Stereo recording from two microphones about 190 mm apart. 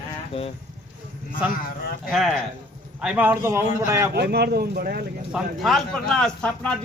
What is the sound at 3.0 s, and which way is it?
A man's voice, 5° right (ahead or behind).